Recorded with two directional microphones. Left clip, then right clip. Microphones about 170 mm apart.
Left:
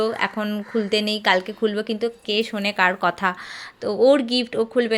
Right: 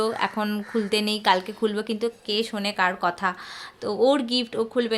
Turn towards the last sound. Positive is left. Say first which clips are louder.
# left 4 dB
turn(degrees=15)  # may be behind; listen again after turning